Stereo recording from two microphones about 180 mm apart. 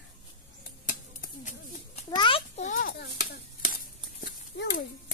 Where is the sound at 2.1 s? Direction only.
25° left (ahead or behind).